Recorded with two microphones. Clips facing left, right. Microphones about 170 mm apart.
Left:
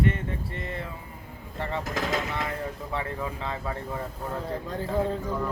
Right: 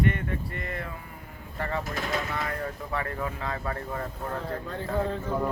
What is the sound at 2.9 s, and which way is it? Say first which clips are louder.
Speech: even; 20° left (ahead or behind).